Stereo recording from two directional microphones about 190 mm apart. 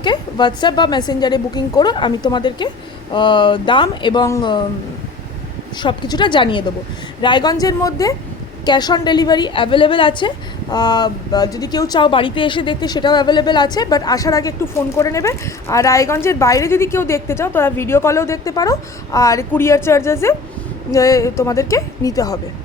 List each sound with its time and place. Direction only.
0.0 s a woman's voice: 25° left (ahead or behind)
5.7 s a woman's voice: 25° left (ahead or behind)